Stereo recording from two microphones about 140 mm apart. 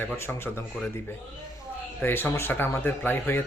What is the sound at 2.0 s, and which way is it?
Speech, 15° left (ahead or behind).